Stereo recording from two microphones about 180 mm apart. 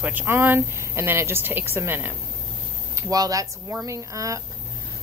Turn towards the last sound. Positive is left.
turn(degrees=-20)  # may be behind; listen again after turning